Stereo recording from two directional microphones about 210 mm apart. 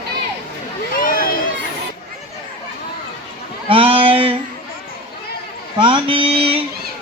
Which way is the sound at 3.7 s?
25° right (ahead or behind).